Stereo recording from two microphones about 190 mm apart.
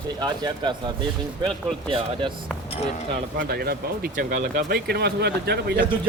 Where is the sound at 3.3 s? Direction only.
55° right (ahead or behind).